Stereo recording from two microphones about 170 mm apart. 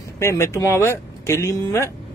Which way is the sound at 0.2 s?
15° left (ahead or behind).